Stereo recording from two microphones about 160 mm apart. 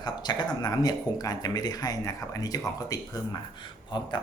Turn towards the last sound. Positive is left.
turn(degrees=30)  # may be behind; listen again after turning